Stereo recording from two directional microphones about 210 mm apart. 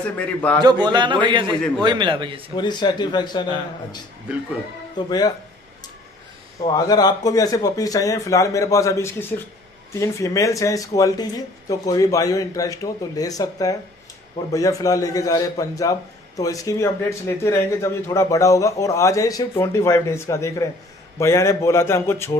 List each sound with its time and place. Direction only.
0.6 s a man's voice: 20° right (ahead or behind)
2.5 s speech: 20° left (ahead or behind)
4.9 s speech: 20° left (ahead or behind)
6.6 s a man's voice: 20° left (ahead or behind)